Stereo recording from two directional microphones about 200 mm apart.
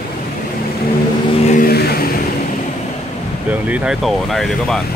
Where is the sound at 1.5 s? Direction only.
50° left (ahead or behind).